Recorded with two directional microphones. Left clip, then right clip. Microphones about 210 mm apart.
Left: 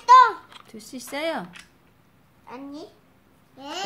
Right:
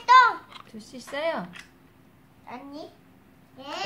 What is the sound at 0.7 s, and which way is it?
Speech, 30° left (ahead or behind).